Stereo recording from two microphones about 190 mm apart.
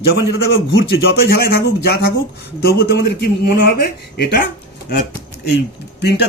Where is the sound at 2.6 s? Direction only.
55° left (ahead or behind).